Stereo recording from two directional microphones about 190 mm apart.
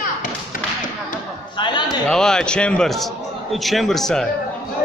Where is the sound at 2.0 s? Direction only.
5° left (ahead or behind).